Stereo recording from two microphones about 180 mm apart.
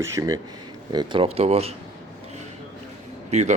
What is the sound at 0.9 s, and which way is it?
Speech, 30° right (ahead or behind).